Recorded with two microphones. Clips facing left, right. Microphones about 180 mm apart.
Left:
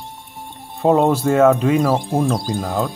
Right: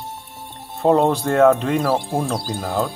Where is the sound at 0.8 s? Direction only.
5° left (ahead or behind).